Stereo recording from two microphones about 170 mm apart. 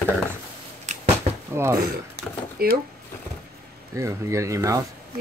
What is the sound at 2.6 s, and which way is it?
Speech, 60° right (ahead or behind).